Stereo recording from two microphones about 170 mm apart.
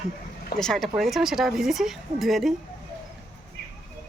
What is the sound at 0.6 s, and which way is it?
Speech, centre (ahead or behind).